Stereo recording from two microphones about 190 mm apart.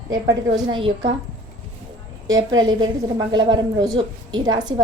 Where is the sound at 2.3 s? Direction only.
20° right (ahead or behind).